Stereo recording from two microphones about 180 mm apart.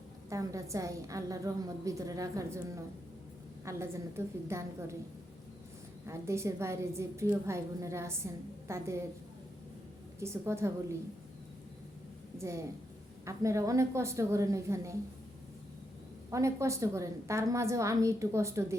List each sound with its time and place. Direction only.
0.3 s a woman's voice: 15° right (ahead or behind)
6.1 s a woman's voice: 15° right (ahead or behind)
10.2 s a woman's voice: 15° right (ahead or behind)
12.4 s a woman's voice: 15° right (ahead or behind)
16.3 s a woman's voice: 15° right (ahead or behind)